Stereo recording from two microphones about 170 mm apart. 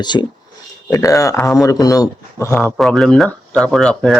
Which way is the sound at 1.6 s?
20° left (ahead or behind).